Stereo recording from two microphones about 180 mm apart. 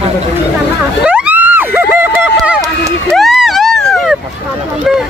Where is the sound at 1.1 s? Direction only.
10° right (ahead or behind).